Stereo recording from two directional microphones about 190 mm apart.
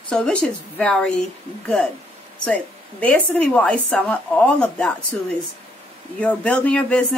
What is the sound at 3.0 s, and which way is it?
Speech, 5° left (ahead or behind).